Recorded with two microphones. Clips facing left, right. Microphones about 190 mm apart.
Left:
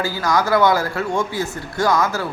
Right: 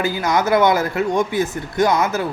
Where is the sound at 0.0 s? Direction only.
20° right (ahead or behind).